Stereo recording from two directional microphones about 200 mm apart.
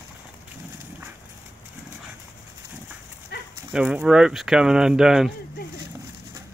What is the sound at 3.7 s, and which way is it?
Speech, 5° right (ahead or behind).